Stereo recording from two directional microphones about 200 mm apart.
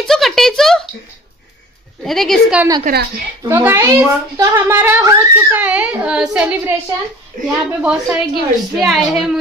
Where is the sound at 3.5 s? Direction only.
10° right (ahead or behind).